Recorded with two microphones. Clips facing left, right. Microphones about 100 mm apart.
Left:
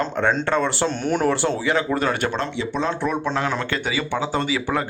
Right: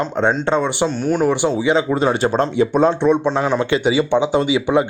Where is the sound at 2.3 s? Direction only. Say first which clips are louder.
Right 9 dB; 45° right (ahead or behind).